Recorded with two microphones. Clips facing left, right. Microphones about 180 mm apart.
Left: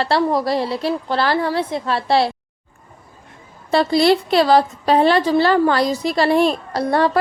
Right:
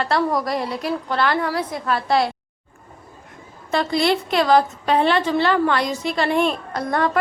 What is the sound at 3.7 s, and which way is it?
A woman's voice, 35° left (ahead or behind).